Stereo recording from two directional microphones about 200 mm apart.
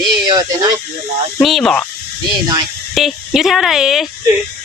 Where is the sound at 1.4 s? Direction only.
Centre (ahead or behind).